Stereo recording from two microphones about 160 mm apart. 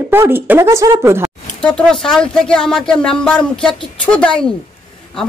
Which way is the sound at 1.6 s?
5° left (ahead or behind).